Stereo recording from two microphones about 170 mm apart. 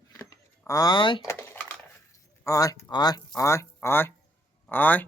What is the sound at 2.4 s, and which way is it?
Speech, 20° left (ahead or behind).